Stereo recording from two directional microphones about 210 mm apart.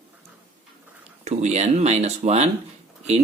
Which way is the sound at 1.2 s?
30° right (ahead or behind).